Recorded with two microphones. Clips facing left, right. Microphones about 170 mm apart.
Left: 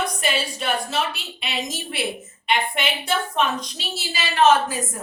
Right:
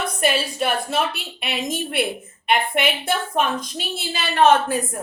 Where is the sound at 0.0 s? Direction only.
55° right (ahead or behind).